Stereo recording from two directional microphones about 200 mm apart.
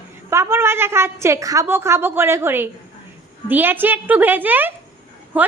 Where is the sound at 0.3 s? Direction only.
15° right (ahead or behind).